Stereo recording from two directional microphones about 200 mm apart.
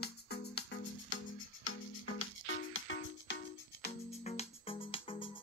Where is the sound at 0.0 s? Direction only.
55° left (ahead or behind).